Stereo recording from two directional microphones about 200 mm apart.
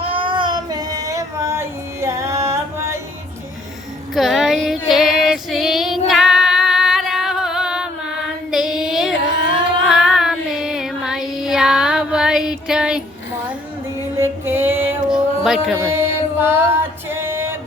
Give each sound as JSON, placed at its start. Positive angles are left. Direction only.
{"t": 0.0, "sound": "child singing", "side_deg": -25}
{"t": 4.1, "sound": "female singing", "side_deg": 0}
{"t": 8.4, "sound": "child singing", "side_deg": 0}
{"t": 9.2, "sound": "child singing", "side_deg": -20}
{"t": 9.9, "sound": "child singing", "side_deg": -5}
{"t": 14.2, "sound": "a sound", "side_deg": -10}
{"t": 15.8, "sound": "music", "side_deg": -15}